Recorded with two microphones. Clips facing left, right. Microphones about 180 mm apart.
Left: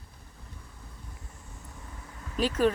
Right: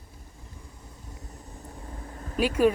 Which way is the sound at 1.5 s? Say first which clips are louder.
Right 5 dB; 35° right (ahead or behind).